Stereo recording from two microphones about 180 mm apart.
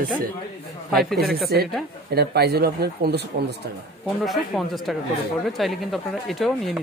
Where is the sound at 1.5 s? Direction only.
60° right (ahead or behind).